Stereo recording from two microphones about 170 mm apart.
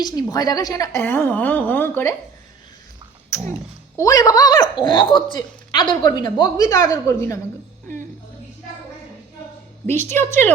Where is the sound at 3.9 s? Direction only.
20° left (ahead or behind).